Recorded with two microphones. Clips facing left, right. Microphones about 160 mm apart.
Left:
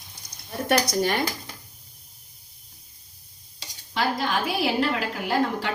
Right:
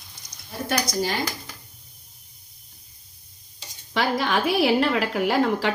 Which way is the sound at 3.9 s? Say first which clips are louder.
Right 2 dB; 70° right (ahead or behind).